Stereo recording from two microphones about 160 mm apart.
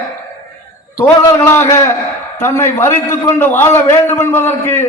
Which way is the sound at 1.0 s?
15° left (ahead or behind).